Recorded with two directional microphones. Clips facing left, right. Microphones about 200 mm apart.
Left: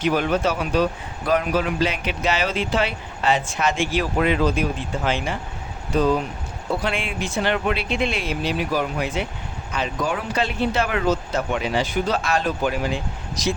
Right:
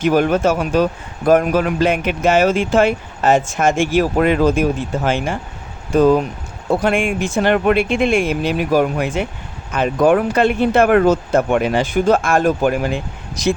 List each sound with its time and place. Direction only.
0.0 s a man's voice: 50° right (ahead or behind)